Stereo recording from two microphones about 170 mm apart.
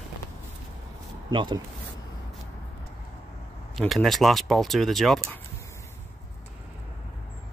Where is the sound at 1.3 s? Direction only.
25° right (ahead or behind).